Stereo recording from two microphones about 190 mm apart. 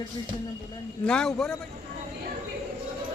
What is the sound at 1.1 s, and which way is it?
Speech, 5° left (ahead or behind).